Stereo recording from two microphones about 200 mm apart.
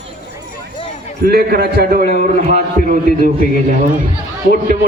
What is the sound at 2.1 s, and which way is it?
Speech, 50° left (ahead or behind).